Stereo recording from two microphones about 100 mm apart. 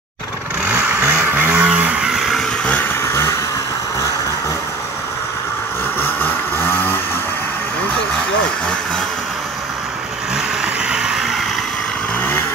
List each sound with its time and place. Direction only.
0.7 s vehicle: 15° right (ahead or behind)
5.9 s vehicle: 20° left (ahead or behind)
10.3 s vehicle: 10° right (ahead or behind)